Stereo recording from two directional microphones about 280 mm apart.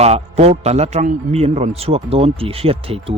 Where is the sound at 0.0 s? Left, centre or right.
Right.